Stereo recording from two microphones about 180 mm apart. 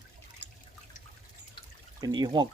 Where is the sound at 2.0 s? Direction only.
25° right (ahead or behind).